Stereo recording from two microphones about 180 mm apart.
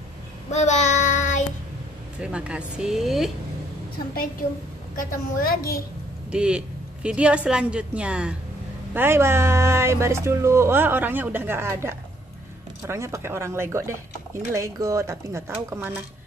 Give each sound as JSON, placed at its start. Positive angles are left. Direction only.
{"t": 0.5, "sound": "child singing", "side_deg": 40}
{"t": 2.1, "sound": "a woman's voice", "side_deg": -5}
{"t": 4.9, "sound": "a woman's voice", "side_deg": 50}
{"t": 6.3, "sound": "a woman's voice", "side_deg": -5}